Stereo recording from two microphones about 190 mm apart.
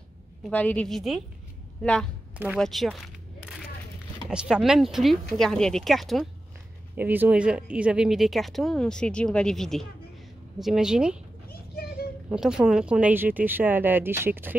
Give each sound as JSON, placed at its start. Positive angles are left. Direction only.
{"t": 0.5, "sound": "speech", "side_deg": 10}
{"t": 4.3, "sound": "speech", "side_deg": -5}
{"t": 11.5, "sound": "a sound", "side_deg": 55}
{"t": 12.3, "sound": "speech", "side_deg": -5}